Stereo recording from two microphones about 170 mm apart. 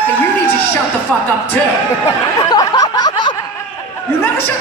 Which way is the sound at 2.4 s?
25° left (ahead or behind).